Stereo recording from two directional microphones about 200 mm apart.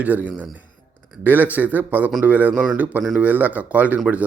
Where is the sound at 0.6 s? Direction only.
40° right (ahead or behind).